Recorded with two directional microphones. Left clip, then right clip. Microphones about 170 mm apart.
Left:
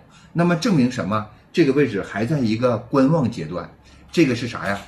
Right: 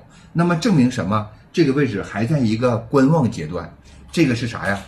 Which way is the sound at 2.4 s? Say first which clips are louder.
Right 1 dB; 15° right (ahead or behind).